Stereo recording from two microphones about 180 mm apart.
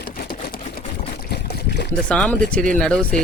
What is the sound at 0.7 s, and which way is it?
Pour, 55° left (ahead or behind).